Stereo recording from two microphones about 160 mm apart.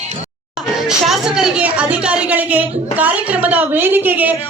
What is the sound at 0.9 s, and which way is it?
A woman's voice, centre (ahead or behind).